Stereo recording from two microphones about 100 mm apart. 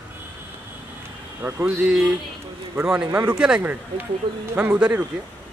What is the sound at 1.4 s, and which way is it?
Speech, 20° right (ahead or behind).